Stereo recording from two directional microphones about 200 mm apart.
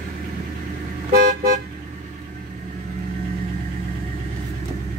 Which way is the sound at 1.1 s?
50° right (ahead or behind).